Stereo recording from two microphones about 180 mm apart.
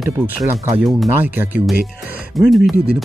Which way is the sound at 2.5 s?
Centre (ahead or behind).